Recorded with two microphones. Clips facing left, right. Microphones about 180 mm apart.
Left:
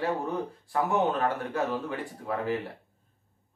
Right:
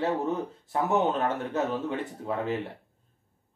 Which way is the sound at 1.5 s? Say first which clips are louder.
Right 1 dB; 20° right (ahead or behind).